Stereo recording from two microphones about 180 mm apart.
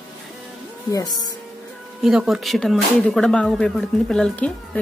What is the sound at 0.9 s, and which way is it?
Speech, 20° left (ahead or behind).